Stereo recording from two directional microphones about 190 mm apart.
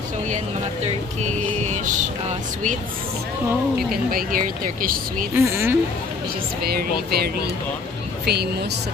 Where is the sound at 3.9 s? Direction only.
50° right (ahead or behind).